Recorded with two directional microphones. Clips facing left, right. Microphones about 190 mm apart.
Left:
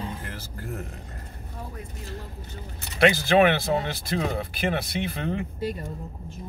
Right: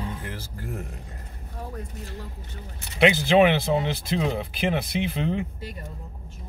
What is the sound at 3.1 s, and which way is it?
Speech, 20° right (ahead or behind).